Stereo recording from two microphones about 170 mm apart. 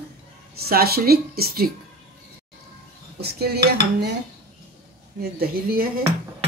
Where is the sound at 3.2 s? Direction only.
70° right (ahead or behind).